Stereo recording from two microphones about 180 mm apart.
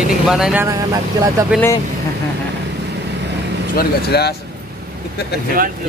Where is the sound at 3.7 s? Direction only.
65° left (ahead or behind).